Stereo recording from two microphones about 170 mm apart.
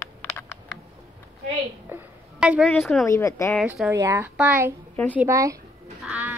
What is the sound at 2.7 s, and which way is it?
Speech, 5° left (ahead or behind).